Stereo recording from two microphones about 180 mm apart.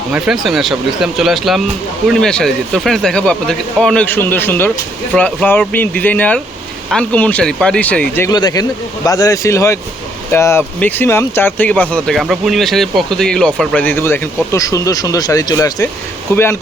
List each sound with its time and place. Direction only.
0.1 s speech: centre (ahead or behind)
8.3 s speech: 20° left (ahead or behind)